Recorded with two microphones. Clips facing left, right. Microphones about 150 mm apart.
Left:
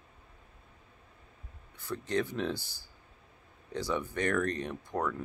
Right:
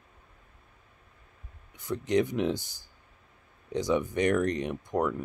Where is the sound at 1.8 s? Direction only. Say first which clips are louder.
Right 6 dB; 15° right (ahead or behind).